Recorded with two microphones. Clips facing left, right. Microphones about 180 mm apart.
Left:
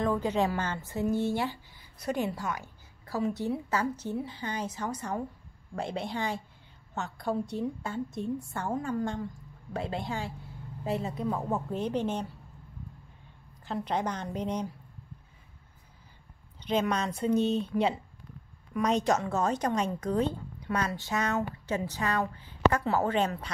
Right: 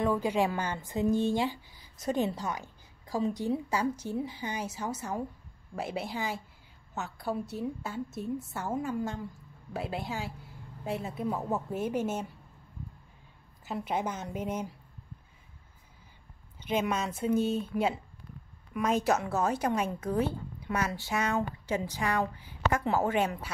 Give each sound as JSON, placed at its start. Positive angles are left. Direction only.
{"t": 0.0, "sound": "a woman's voice", "side_deg": -10}
{"t": 13.7, "sound": "a woman's voice", "side_deg": -10}
{"t": 16.6, "sound": "a woman's voice", "side_deg": -10}